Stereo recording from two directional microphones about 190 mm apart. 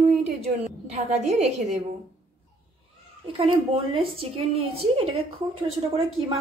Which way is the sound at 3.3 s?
30° right (ahead or behind).